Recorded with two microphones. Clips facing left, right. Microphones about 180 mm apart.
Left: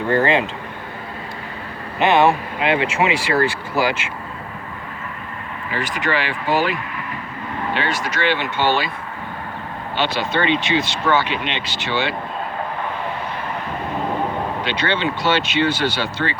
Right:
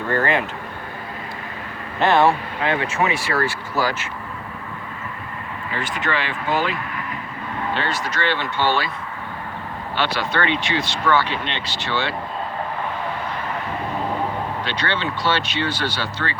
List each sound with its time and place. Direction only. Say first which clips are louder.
0.1 s speech: left 4 dB; 20° left (ahead or behind)
2.0 s speech: left 1 dB; 20° left (ahead or behind)
5.7 s speech: left 3 dB; 5° left (ahead or behind)
7.7 s speech: left 2 dB; 15° left (ahead or behind)
10.0 s speech: left 2 dB; 20° left (ahead or behind)
14.6 s speech: left 5 dB; 20° left (ahead or behind)